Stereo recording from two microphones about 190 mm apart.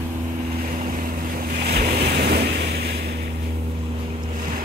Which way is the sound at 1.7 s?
55° right (ahead or behind).